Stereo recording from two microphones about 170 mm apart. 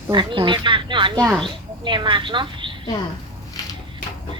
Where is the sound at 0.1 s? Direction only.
30° right (ahead or behind).